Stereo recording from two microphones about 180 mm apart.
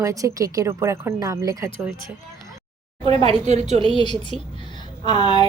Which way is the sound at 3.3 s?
40° right (ahead or behind).